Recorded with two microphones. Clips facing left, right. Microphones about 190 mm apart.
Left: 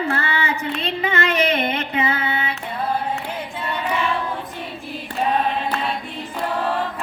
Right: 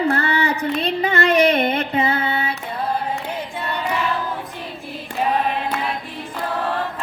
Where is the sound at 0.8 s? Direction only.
35° right (ahead or behind).